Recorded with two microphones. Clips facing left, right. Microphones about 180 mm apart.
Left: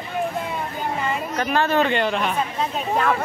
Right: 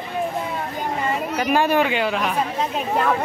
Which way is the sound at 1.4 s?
10° right (ahead or behind).